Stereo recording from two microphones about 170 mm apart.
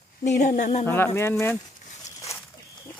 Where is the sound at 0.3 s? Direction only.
45° left (ahead or behind).